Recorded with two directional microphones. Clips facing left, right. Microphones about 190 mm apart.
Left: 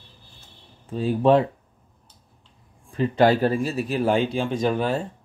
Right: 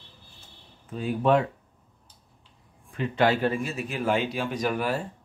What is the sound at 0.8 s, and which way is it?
Speech, 30° left (ahead or behind).